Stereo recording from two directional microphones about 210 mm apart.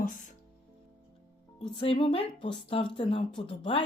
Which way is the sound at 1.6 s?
25° left (ahead or behind).